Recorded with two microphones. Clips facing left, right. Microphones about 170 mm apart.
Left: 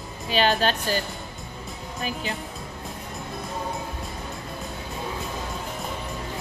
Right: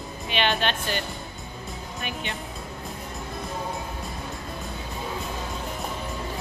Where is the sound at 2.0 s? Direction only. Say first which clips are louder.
Left 4 dB; 35° left (ahead or behind).